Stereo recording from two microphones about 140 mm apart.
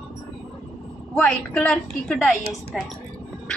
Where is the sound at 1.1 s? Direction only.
10° left (ahead or behind).